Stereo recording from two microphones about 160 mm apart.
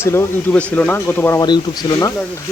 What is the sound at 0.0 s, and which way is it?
A man's voice, 15° left (ahead or behind).